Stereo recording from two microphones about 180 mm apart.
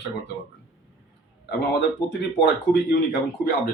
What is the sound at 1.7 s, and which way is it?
A man's voice, 65° left (ahead or behind).